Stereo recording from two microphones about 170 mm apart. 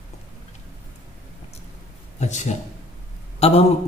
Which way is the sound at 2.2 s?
45° left (ahead or behind).